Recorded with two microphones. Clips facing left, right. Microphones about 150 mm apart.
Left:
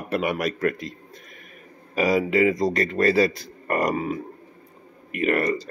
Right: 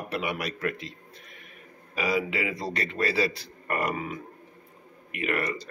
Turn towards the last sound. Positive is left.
turn(degrees=40)  # may be behind; listen again after turning